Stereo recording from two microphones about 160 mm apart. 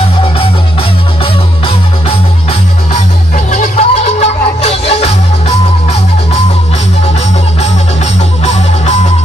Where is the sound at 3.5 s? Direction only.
40° left (ahead or behind).